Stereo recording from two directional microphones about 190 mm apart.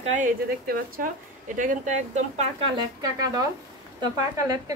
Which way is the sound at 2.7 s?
20° right (ahead or behind).